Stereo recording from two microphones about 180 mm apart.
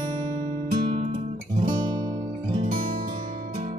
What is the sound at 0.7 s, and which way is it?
Guitar, 30° right (ahead or behind).